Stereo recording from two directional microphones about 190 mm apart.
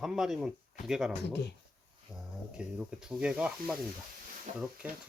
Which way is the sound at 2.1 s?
5° right (ahead or behind).